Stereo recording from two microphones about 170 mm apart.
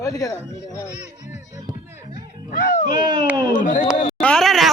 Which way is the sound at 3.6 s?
50° left (ahead or behind).